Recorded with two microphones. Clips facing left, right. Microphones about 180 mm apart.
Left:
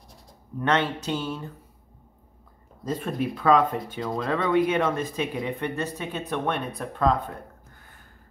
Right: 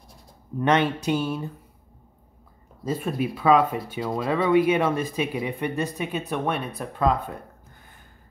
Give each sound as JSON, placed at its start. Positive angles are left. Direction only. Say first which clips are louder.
{"t": 0.6, "sound": "speech", "louder": "right 3 dB", "side_deg": -15}
{"t": 2.8, "sound": "speech", "louder": "right 1 dB", "side_deg": -5}